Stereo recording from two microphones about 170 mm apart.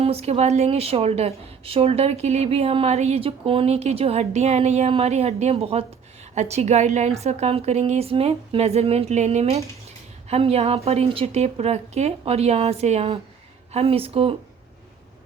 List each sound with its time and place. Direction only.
0.0 s a woman's voice: 35° right (ahead or behind)